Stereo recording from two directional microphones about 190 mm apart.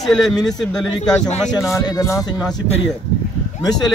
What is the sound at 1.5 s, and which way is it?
Speech, 15° left (ahead or behind).